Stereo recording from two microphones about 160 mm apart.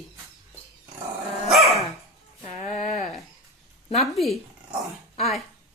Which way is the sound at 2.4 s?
50° left (ahead or behind).